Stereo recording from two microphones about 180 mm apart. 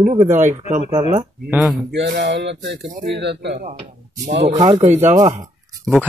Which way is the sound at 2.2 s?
80° right.